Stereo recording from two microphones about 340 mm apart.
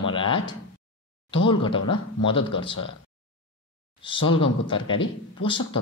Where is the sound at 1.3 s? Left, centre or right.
Centre.